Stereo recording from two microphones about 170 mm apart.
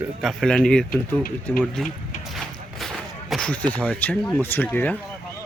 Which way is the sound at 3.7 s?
10° left (ahead or behind).